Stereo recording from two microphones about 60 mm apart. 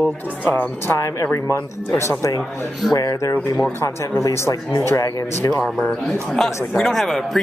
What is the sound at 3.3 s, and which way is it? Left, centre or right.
Speech, left.